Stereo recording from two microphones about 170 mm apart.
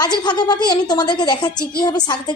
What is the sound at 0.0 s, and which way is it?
A woman's voice, 25° left (ahead or behind).